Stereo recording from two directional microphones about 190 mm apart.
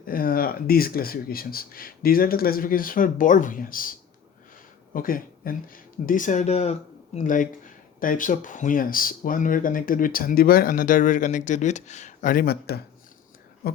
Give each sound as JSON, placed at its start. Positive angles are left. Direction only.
{"t": 0.0, "sound": "speech", "side_deg": 50}
{"t": 4.9, "sound": "speech", "side_deg": 50}